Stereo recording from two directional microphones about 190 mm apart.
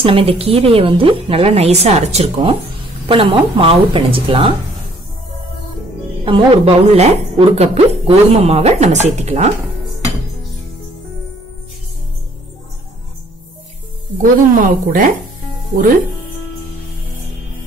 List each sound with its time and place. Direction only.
0.0 s a woman's voice: 30° right (ahead or behind)
6.2 s a woman's voice: 30° right (ahead or behind)
14.2 s speech: 45° right (ahead or behind)